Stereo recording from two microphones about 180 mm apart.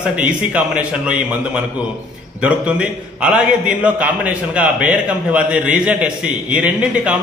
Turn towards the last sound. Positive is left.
turn(degrees=-5)  # may be behind; listen again after turning